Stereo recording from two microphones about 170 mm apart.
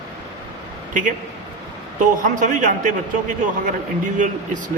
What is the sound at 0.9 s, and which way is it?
A man's voice, 50° right (ahead or behind).